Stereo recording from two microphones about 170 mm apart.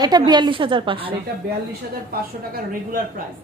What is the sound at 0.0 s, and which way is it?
A woman's voice, 25° right (ahead or behind).